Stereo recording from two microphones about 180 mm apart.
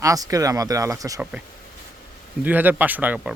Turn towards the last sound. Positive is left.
turn(degrees=-10)  # may be behind; listen again after turning